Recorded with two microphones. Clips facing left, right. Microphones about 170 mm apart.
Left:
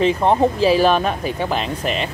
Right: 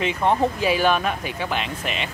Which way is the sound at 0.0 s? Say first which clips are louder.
Left 5 dB; 35° left (ahead or behind).